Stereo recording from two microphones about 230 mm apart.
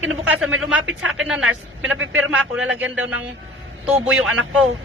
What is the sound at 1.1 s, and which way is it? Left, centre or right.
Speech, centre.